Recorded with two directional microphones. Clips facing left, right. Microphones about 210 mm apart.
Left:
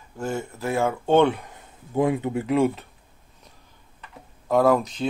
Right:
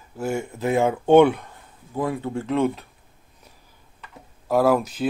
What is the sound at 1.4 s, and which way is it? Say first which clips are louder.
Speech: left 1 dB; 20° left (ahead or behind).